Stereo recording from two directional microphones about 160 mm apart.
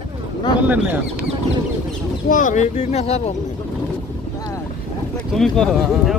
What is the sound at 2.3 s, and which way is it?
Speech, 55° left (ahead or behind).